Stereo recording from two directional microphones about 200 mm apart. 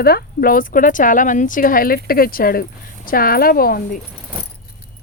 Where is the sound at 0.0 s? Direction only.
50° left (ahead or behind).